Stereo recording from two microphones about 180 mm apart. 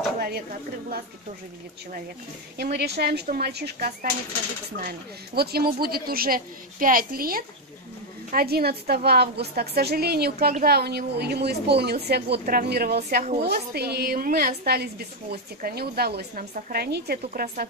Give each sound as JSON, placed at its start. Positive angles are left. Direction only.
{"t": 2.5, "sound": "a woman's voice", "side_deg": -65}
{"t": 13.2, "sound": "a woman's voice", "side_deg": -40}
{"t": 13.5, "sound": "a woman's voice", "side_deg": -65}